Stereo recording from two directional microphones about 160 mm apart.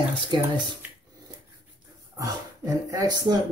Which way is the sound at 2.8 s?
25° right (ahead or behind).